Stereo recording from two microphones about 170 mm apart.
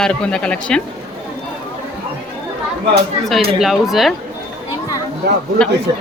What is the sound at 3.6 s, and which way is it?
Speech, centre (ahead or behind).